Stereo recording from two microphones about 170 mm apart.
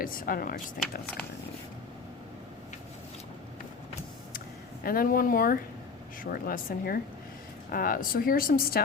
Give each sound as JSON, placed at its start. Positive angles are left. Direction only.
{"t": 0.0, "sound": "speech", "side_deg": 55}
{"t": 4.8, "sound": "speech", "side_deg": 60}